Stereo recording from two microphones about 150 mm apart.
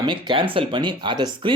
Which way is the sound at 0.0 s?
30° right (ahead or behind).